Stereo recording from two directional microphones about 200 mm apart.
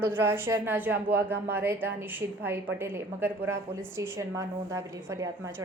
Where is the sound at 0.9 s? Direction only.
60° right (ahead or behind).